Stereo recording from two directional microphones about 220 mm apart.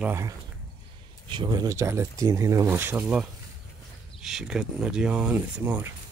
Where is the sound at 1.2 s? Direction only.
20° right (ahead or behind).